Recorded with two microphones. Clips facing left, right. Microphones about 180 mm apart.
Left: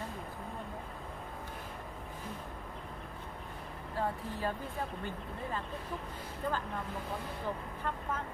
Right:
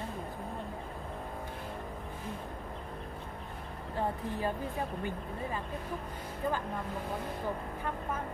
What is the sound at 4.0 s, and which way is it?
Speech, 15° right (ahead or behind).